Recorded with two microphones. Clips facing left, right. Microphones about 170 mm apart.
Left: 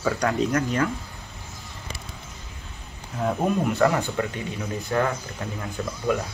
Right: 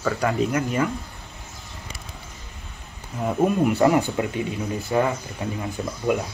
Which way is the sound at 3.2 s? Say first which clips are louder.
Right 3 dB; 10° right (ahead or behind).